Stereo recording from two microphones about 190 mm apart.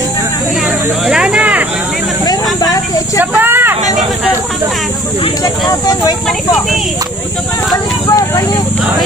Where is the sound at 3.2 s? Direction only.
10° right (ahead or behind).